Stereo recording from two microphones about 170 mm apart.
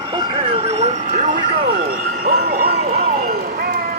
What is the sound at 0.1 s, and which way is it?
Vehicle, 30° right (ahead or behind).